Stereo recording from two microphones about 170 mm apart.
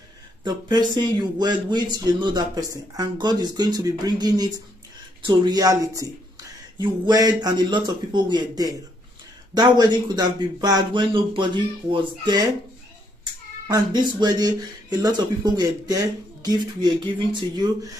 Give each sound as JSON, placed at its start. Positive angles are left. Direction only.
{"t": 0.4, "sound": "a man's voice", "side_deg": -25}